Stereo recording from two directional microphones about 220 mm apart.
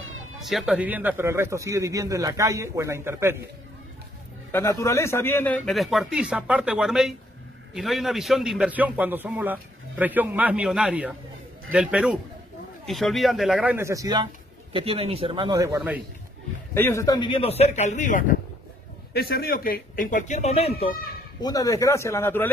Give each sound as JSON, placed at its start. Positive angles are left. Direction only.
{"t": 0.4, "sound": "speech", "side_deg": 0}
{"t": 4.5, "sound": "a man's voice", "side_deg": 10}
{"t": 16.7, "sound": "a man's voice", "side_deg": 10}
{"t": 19.1, "sound": "speech", "side_deg": 45}
{"t": 21.4, "sound": "speech", "side_deg": 15}